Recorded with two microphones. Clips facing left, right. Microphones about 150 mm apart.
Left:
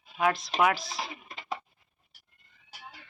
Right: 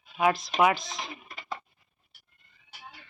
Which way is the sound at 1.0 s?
25° left (ahead or behind).